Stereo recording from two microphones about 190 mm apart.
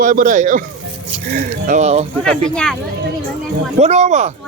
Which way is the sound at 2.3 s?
5° left (ahead or behind).